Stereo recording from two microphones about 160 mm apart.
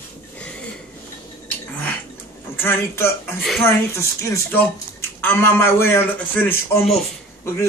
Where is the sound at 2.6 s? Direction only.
15° left (ahead or behind).